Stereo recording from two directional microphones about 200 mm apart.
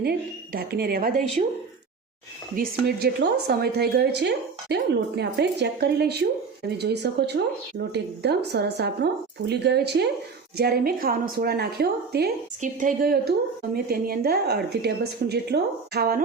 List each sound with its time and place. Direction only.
0.0 s a woman's voice: 50° right (ahead or behind)
2.6 s a woman's voice: 50° right (ahead or behind)
12.5 s a woman's voice: 40° right (ahead or behind)